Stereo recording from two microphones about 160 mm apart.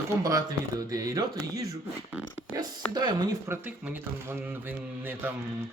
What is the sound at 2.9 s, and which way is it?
Speech, 25° right (ahead or behind).